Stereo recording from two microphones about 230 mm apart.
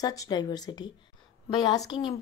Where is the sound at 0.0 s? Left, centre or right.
Centre.